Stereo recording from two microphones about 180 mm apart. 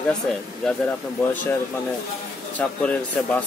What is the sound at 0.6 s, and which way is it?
Speech, 5° left (ahead or behind).